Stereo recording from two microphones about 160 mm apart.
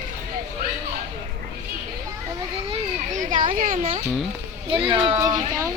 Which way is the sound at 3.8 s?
35° right (ahead or behind).